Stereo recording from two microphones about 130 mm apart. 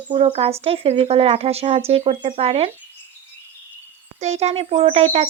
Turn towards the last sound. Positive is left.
turn(degrees=-50)  # may be behind; listen again after turning